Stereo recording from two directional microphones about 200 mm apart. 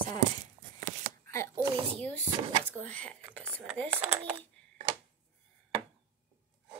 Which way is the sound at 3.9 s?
5° right (ahead or behind).